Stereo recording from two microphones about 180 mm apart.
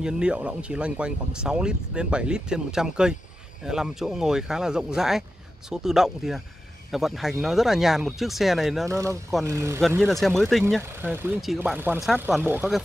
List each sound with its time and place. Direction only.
0.0 s speech: 5° right (ahead or behind)
8.8 s speech: 15° right (ahead or behind)
10.0 s speech: centre (ahead or behind)
10.8 s speech: 10° right (ahead or behind)